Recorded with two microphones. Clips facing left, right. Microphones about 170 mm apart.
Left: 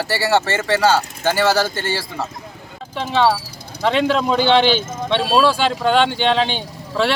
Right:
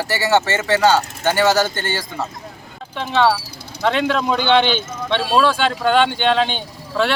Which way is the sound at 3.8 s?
Centre (ahead or behind).